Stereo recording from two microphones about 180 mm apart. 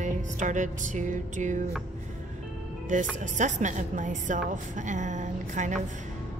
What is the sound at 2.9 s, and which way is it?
Music, 45° right (ahead or behind).